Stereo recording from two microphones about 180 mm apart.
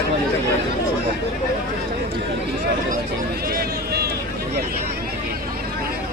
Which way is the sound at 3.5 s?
60° right (ahead or behind).